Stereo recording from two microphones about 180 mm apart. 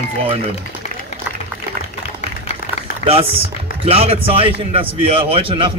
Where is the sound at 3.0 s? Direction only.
40° left (ahead or behind).